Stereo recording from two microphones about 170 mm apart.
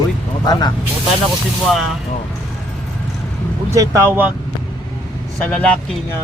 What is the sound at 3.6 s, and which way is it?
Speech, 15° right (ahead or behind).